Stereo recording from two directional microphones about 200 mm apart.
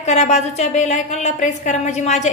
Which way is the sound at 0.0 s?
35° left (ahead or behind).